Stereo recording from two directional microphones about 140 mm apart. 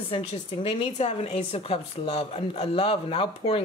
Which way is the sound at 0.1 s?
40° left (ahead or behind).